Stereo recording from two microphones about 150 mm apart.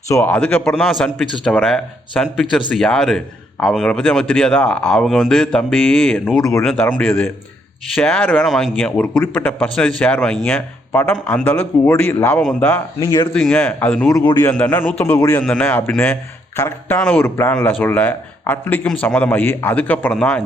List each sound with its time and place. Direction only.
0.1 s a man's voice: 15° left (ahead or behind)
7.9 s a man's voice: 5° left (ahead or behind)
13.0 s a man's voice: 25° left (ahead or behind)
13.3 s a man's voice: 5° left (ahead or behind)
14.1 s a man's voice: 20° left (ahead or behind)
14.5 s a man's voice: 10° left (ahead or behind)
15.4 s a man's voice: 10° left (ahead or behind)